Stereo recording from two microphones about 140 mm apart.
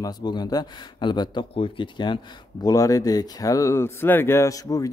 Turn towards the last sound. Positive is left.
turn(degrees=25)  # may be behind; listen again after turning